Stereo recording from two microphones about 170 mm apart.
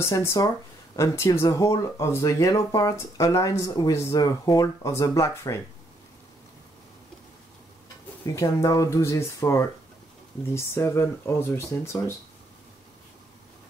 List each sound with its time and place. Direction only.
0.0 s speech: 15° left (ahead or behind)
8.3 s speech: 20° left (ahead or behind)